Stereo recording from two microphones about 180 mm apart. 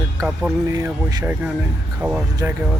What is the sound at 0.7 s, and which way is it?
Speech, 20° right (ahead or behind).